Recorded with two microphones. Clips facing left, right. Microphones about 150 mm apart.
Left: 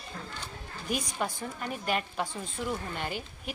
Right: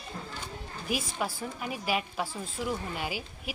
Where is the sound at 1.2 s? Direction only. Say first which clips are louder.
Even; 5° right (ahead or behind).